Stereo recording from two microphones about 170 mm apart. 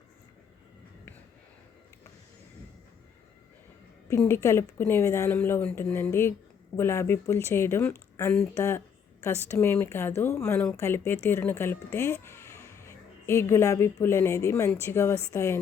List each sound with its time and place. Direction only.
4.2 s speech: 15° left (ahead or behind)